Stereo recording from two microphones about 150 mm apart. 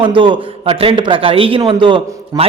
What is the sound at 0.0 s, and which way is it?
Speech, 35° right (ahead or behind).